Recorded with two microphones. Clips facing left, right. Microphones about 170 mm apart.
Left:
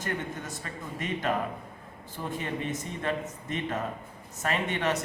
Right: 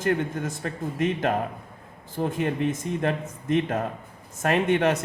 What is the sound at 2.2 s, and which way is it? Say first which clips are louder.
Speech: right 8 dB; 50° right (ahead or behind).